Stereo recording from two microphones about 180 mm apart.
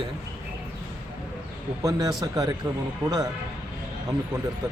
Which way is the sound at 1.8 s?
20° right (ahead or behind).